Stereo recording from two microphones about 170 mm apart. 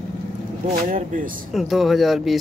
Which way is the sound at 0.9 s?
50° right (ahead or behind).